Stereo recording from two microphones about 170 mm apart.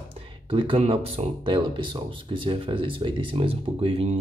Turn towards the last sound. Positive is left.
turn(degrees=-35)  # may be behind; listen again after turning